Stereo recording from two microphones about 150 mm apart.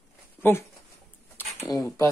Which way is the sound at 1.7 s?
15° left (ahead or behind).